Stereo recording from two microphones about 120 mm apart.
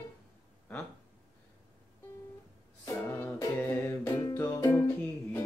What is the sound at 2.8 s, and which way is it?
Music, 20° left (ahead or behind).